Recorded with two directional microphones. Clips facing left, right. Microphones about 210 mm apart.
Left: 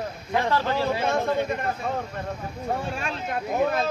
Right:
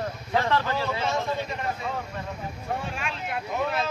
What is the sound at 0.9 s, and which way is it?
Speech, 55° left (ahead or behind).